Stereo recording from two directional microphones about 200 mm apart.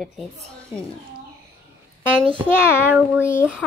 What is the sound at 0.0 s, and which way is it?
Speech, centre (ahead or behind).